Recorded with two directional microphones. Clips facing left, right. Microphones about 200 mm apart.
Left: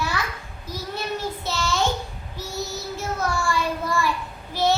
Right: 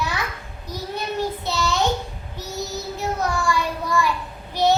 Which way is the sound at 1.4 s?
15° right (ahead or behind).